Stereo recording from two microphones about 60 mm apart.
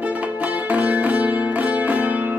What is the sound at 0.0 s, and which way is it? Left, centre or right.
Music, right.